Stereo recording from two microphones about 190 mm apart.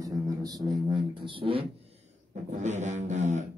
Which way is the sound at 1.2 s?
30° right (ahead or behind).